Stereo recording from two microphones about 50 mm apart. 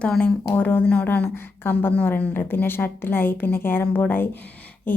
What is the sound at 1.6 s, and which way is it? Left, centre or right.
A woman's voice, left.